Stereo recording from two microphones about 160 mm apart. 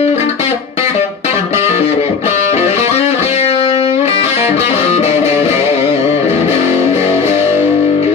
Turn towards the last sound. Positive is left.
turn(degrees=40)  # may be behind; listen again after turning